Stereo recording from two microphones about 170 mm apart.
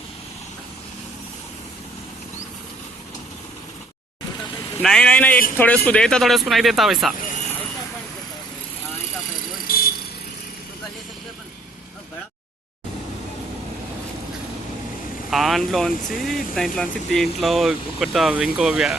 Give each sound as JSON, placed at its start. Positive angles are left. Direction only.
{"t": 4.8, "sound": "speech", "side_deg": 5}
{"t": 9.7, "sound": "vehicle", "side_deg": 60}
{"t": 15.3, "sound": "speech", "side_deg": 0}